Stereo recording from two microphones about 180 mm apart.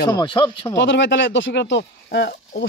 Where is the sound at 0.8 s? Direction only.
90° left.